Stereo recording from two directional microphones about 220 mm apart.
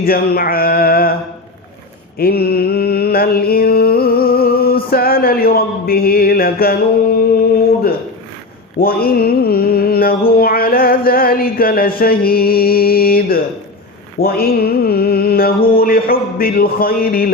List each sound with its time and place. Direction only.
0.0 s male singing: 45° left (ahead or behind)
2.1 s mantra: 45° left (ahead or behind)